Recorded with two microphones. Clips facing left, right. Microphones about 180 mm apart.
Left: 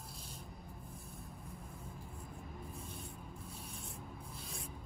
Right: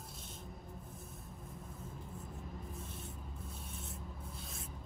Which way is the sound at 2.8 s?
Centre (ahead or behind).